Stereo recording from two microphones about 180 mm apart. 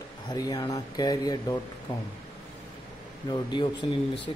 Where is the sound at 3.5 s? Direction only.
25° left (ahead or behind).